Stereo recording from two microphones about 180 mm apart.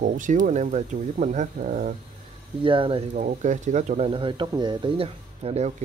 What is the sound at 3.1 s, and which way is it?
Speech, 45° right (ahead or behind).